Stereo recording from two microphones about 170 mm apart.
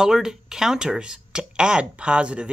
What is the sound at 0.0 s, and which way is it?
Speech, 5° right (ahead or behind).